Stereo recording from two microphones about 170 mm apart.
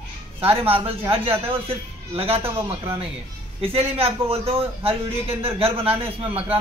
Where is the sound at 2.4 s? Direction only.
15° right (ahead or behind).